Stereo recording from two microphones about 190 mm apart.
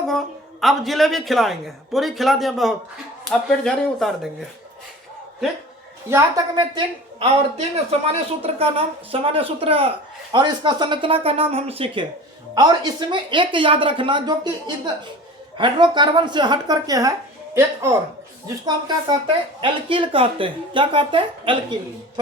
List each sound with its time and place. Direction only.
0.1 s a man's voice: centre (ahead or behind)
6.1 s a woman's voice: 15° right (ahead or behind)